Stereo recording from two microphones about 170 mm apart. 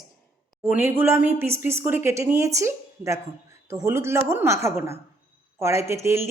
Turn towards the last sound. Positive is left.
turn(degrees=-15)  # may be behind; listen again after turning